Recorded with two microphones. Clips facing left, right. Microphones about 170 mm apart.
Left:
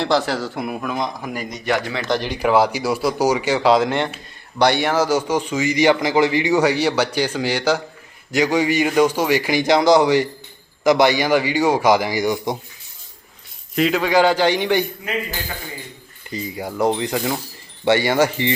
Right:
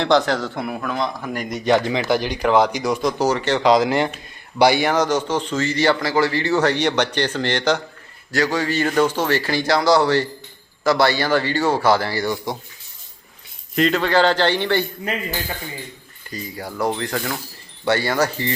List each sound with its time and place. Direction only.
0.0 s speech: 5° left (ahead or behind)
1.6 s speech: 20° right (ahead or behind)
2.0 s speech: centre (ahead or behind); by 12.5 s 15° left (ahead or behind)
13.7 s speech: 10° left (ahead or behind)
16.3 s speech: 20° left (ahead or behind)